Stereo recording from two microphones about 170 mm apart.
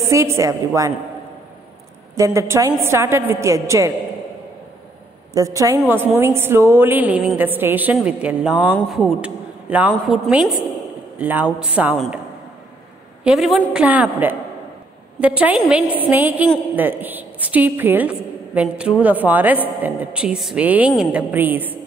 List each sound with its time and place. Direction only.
0.0 s a woman's voice: 15° right (ahead or behind)
2.1 s a woman's voice: 20° right (ahead or behind)
5.3 s a woman's voice: 20° right (ahead or behind)
13.2 s a woman's voice: 5° right (ahead or behind)